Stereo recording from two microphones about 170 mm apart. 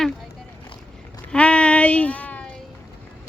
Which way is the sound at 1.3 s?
5° left (ahead or behind).